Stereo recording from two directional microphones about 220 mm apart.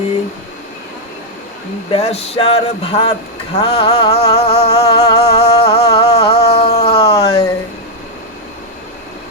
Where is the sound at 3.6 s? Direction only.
15° left (ahead or behind).